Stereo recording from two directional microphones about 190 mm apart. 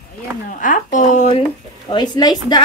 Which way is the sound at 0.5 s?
45° left (ahead or behind).